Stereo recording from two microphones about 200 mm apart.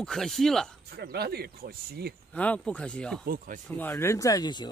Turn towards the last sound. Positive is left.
turn(degrees=20)  # may be behind; listen again after turning